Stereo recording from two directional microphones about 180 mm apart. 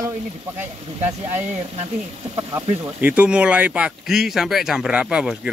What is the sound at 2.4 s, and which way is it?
Speech, 15° right (ahead or behind).